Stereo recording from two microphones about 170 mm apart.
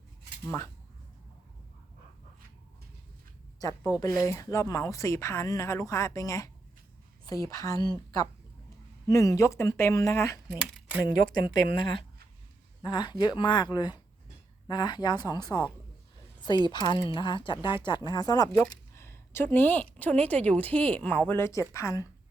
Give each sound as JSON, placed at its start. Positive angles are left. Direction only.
{"t": 0.4, "sound": "speech", "side_deg": 15}
{"t": 3.6, "sound": "speech", "side_deg": 20}
{"t": 10.6, "sound": "speech", "side_deg": 5}
{"t": 11.7, "sound": "speech", "side_deg": 30}
{"t": 16.7, "sound": "speech", "side_deg": 25}